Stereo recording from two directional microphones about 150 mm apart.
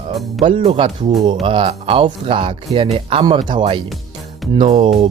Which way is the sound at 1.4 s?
35° right (ahead or behind).